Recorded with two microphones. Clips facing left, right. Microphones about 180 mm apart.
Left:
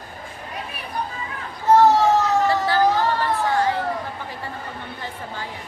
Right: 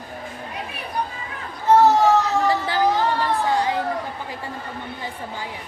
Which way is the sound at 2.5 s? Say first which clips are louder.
Left 1 dB; 15° right (ahead or behind).